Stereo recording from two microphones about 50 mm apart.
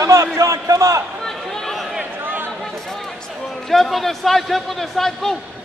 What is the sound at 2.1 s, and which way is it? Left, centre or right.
Chatter, right.